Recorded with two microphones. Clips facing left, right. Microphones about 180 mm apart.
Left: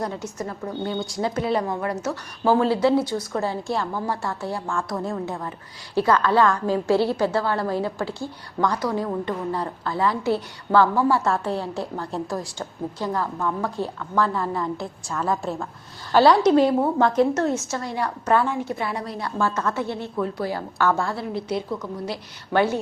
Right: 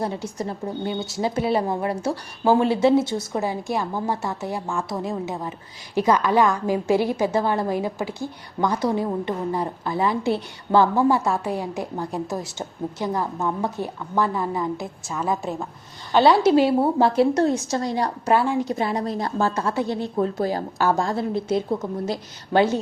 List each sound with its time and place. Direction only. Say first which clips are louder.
0.0 s a woman's voice: right 2 dB; 30° right (ahead or behind)
16.1 s a woman's voice: even; centre (ahead or behind)
17.7 s a woman's voice: right 3 dB; 35° right (ahead or behind)
19.6 s a woman's voice: right 2 dB; 15° right (ahead or behind)
20.1 s a woman's voice: right 3 dB; 40° right (ahead or behind)
20.7 s a woman's voice: left 1 dB; 15° right (ahead or behind)
21.0 s a woman's voice: right 3 dB; 45° right (ahead or behind)